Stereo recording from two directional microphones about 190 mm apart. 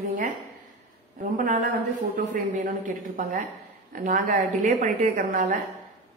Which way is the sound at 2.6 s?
45° right (ahead or behind).